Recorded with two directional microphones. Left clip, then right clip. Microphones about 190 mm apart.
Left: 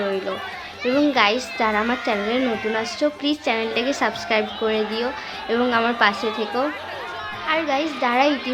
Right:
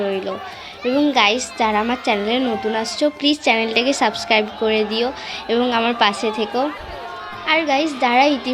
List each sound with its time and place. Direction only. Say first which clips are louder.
0.9 s speech: right 2 dB; 15° right (ahead or behind)